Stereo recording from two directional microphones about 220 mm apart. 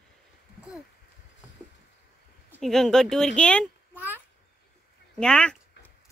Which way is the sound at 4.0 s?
10° right (ahead or behind).